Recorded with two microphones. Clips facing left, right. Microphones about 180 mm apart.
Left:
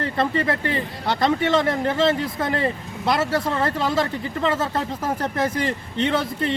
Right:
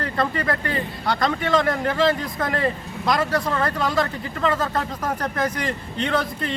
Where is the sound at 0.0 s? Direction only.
25° left (ahead or behind).